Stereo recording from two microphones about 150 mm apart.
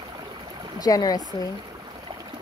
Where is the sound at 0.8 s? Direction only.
25° left (ahead or behind).